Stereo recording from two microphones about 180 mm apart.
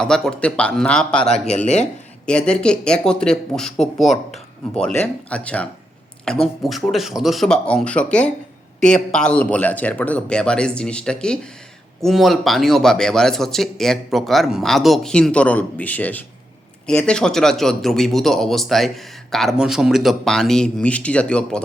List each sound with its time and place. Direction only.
0.0 s speech: 5° left (ahead or behind)
1.6 s speech: 40° left (ahead or behind)
2.2 s speech: 5° left (ahead or behind)